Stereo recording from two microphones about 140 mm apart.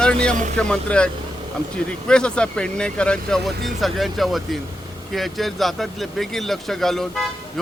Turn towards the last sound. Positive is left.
turn(degrees=0)  # may be behind; listen again after turning